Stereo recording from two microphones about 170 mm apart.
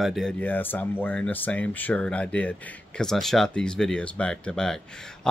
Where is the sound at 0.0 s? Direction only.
Centre (ahead or behind).